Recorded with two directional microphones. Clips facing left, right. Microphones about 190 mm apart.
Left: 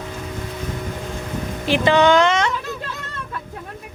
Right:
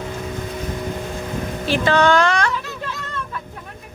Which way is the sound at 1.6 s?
15° left (ahead or behind).